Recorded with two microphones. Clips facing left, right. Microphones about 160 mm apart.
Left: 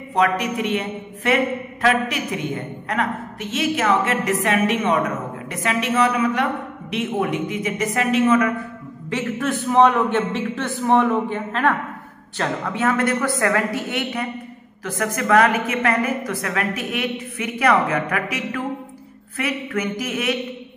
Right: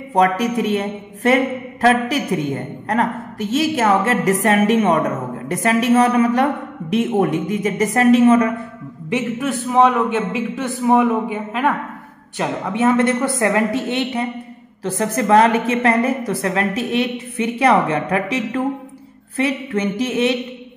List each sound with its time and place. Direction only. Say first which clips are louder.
0.1 s a woman's voice: right 4 dB; 40° right (ahead or behind)
9.1 s a man's voice: right 3 dB; 10° right (ahead or behind); by 20.3 s 30° right (ahead or behind)